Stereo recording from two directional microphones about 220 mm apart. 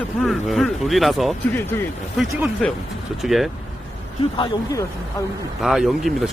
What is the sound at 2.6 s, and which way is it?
Speech, 5° left (ahead or behind).